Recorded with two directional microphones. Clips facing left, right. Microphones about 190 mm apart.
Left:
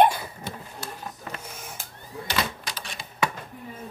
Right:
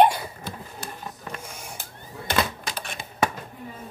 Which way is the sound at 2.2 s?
55° right (ahead or behind).